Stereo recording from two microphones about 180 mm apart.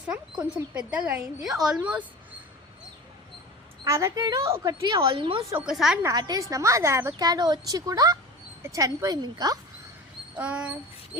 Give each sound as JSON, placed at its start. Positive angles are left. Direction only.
{"t": 0.3, "sound": "speech", "side_deg": -5}
{"t": 3.8, "sound": "a woman's voice", "side_deg": -15}
{"t": 5.5, "sound": "speech", "side_deg": -5}
{"t": 6.0, "sound": "a woman's voice", "side_deg": -20}
{"t": 10.3, "sound": "speech", "side_deg": -10}